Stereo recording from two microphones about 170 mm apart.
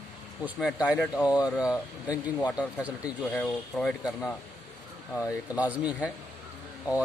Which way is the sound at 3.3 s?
5° left (ahead or behind).